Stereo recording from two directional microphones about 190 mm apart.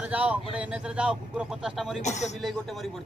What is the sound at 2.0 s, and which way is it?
Speech, 35° left (ahead or behind).